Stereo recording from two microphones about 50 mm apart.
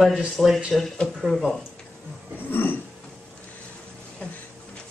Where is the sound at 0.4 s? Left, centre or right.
Centre.